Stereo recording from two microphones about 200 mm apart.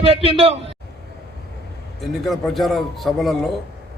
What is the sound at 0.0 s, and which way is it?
Speech, 30° right (ahead or behind).